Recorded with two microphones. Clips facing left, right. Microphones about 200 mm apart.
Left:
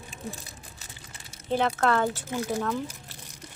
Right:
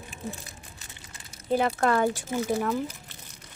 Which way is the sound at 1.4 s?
10° right (ahead or behind).